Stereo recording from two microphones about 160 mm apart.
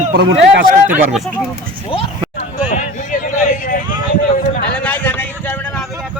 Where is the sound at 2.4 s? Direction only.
50° left (ahead or behind).